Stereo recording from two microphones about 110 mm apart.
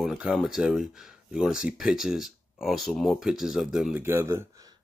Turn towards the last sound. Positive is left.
turn(degrees=-20)  # may be behind; listen again after turning